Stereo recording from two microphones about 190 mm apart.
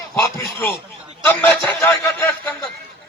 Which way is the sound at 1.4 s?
5° left (ahead or behind).